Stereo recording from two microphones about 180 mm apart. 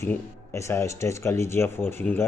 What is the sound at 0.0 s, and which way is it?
Speech, 15° left (ahead or behind).